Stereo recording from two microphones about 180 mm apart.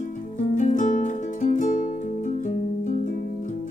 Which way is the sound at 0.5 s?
45° left (ahead or behind).